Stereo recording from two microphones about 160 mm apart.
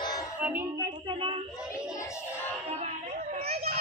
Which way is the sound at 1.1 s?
35° right (ahead or behind).